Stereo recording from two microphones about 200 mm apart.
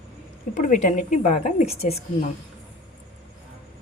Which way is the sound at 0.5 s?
35° left (ahead or behind).